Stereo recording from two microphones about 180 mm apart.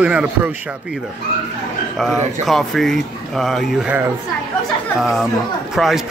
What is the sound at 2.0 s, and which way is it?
A man's voice, centre (ahead or behind).